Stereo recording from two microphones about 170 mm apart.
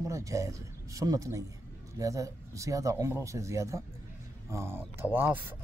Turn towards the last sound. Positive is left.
turn(degrees=-10)  # may be behind; listen again after turning